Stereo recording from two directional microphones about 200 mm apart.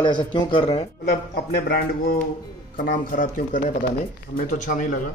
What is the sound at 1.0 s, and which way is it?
A man's voice, 50° left (ahead or behind).